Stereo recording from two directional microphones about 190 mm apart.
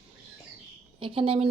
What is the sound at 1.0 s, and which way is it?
Speech, 30° right (ahead or behind).